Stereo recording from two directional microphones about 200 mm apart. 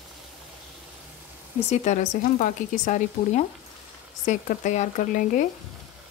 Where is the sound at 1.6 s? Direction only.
35° left (ahead or behind).